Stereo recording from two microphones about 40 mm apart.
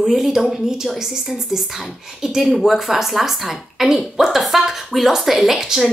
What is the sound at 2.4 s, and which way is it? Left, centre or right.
A woman's voice, centre.